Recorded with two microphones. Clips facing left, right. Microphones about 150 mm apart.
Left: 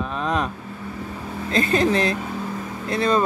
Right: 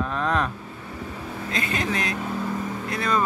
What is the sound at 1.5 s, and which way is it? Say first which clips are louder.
Speech: left 8 dB; 35° left (ahead or behind).